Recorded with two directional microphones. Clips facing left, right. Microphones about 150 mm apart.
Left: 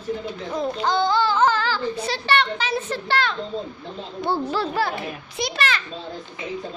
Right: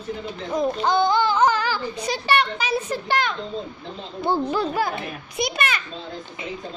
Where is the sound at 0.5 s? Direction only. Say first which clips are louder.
Right 2 dB; 20° right (ahead or behind).